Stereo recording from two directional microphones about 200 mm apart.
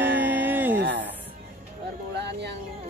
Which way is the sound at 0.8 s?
65° right (ahead or behind).